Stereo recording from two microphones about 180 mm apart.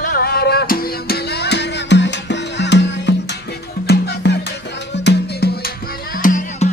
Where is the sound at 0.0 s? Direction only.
55° left (ahead or behind); by 3.2 s 75° left (ahead or behind).